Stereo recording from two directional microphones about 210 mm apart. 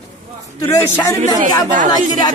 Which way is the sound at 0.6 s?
10° left (ahead or behind).